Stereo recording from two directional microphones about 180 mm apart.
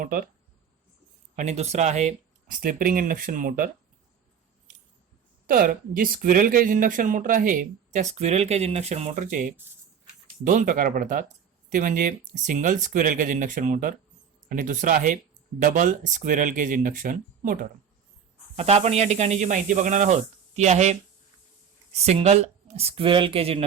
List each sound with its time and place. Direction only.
0.0 s speech: 50° right (ahead or behind)
1.4 s speech: 40° right (ahead or behind)
5.5 s speech: 50° right (ahead or behind)
18.5 s speech: 35° right (ahead or behind)